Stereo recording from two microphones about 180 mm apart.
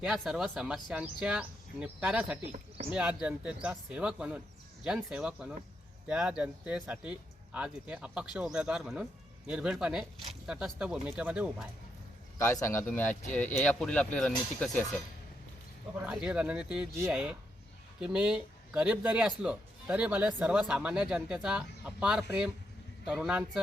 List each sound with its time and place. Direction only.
0.0 s speech: 5° right (ahead or behind)
2.4 s speech: 40° right (ahead or behind)
2.9 s speech: 5° right (ahead or behind)
12.4 s speech: 15° left (ahead or behind)
16.0 s speech: 5° right (ahead or behind)